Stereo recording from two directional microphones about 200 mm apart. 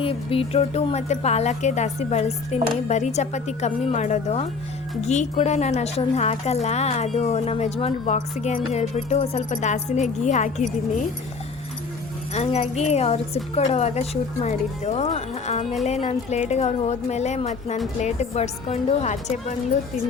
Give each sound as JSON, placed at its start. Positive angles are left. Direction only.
{"t": 0.0, "sound": "a woman's voice", "side_deg": 30}
{"t": 12.3, "sound": "a woman's voice", "side_deg": 30}